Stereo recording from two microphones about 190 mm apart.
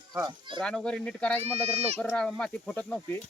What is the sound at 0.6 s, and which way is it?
Speech, 5° left (ahead or behind).